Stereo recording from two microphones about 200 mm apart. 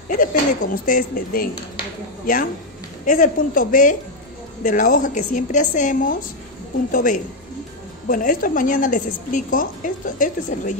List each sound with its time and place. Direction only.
0.1 s a woman's voice: 45° left (ahead or behind)